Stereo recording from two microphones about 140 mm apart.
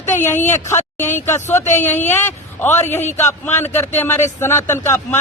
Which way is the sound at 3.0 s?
55° left (ahead or behind).